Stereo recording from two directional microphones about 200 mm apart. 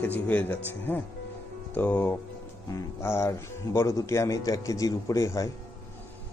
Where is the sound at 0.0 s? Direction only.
10° left (ahead or behind).